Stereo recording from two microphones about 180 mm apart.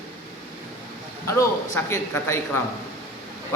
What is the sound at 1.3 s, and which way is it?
A man's voice, 15° left (ahead or behind).